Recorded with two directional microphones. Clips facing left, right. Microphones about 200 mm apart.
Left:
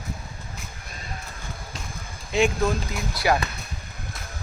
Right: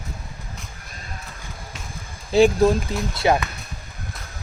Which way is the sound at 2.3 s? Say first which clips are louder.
Right 7 dB; 35° right (ahead or behind).